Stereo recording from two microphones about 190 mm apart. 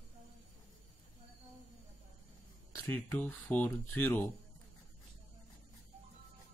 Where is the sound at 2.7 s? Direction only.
10° left (ahead or behind).